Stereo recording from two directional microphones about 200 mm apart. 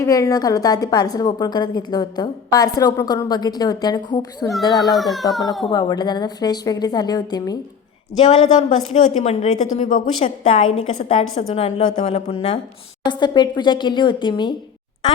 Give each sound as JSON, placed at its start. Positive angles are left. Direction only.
{"t": 0.0, "sound": "a woman's voice", "side_deg": 15}
{"t": 4.8, "sound": "speech", "side_deg": 0}
{"t": 5.6, "sound": "a woman's voice", "side_deg": 20}
{"t": 8.3, "sound": "speech", "side_deg": 35}
{"t": 10.4, "sound": "a woman's voice", "side_deg": 25}